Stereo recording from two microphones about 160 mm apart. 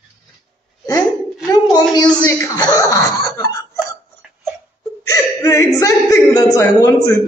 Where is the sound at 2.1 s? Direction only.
25° left (ahead or behind).